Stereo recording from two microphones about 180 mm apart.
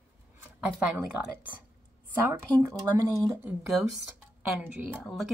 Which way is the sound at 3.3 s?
15° right (ahead or behind).